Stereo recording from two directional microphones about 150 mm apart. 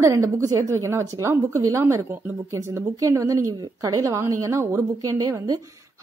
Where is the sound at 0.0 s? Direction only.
20° right (ahead or behind).